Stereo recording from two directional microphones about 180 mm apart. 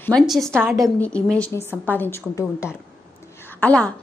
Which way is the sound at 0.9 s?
5° left (ahead or behind).